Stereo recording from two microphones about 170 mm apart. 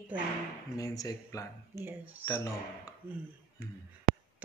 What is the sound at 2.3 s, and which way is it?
Speech, 20° left (ahead or behind).